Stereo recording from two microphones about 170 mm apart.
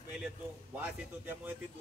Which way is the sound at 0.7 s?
10° right (ahead or behind).